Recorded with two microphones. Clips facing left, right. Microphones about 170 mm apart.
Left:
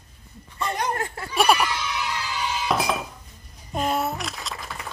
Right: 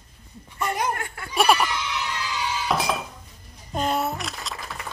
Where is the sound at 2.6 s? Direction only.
Centre (ahead or behind).